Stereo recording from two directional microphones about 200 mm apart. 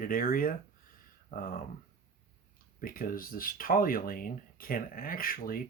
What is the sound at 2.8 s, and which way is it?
Speech, 45° left (ahead or behind).